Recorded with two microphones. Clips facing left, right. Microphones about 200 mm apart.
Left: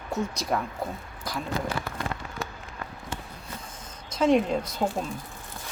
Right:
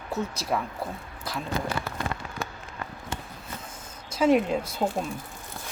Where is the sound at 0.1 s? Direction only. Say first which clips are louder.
Left 1 dB; centre (ahead or behind).